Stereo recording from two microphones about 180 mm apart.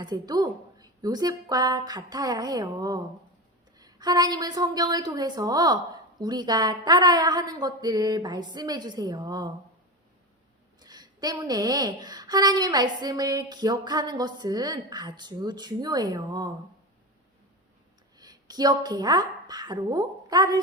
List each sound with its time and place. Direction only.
0.0 s a woman's voice: 20° right (ahead or behind)
10.8 s a woman's voice: 20° right (ahead or behind)
18.2 s a woman's voice: 20° right (ahead or behind)